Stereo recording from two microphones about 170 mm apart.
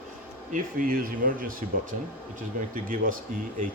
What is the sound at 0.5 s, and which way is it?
Speech, 55° right (ahead or behind).